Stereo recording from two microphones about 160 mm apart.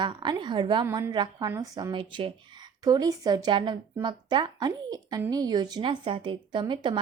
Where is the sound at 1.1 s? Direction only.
25° right (ahead or behind).